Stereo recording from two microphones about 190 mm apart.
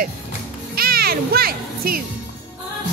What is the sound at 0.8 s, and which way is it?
Music, 50° right (ahead or behind).